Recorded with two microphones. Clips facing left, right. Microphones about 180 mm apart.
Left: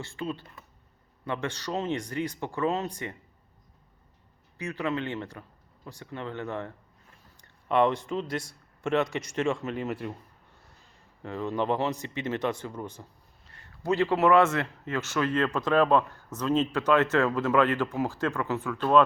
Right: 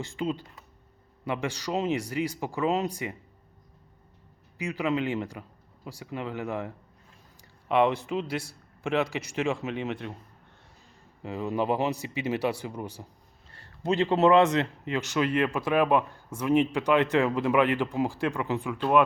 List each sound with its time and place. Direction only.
0.0 s speech: 15° right (ahead or behind)
4.5 s a man's voice: 10° right (ahead or behind); by 10.2 s 5° left (ahead or behind)
11.2 s speech: 10° right (ahead or behind)
13.5 s a sound: 30° right (ahead or behind)
13.8 s speech: 20° right (ahead or behind)